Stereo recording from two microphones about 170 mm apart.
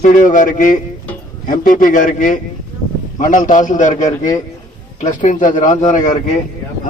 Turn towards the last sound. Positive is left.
turn(degrees=45)  # may be behind; listen again after turning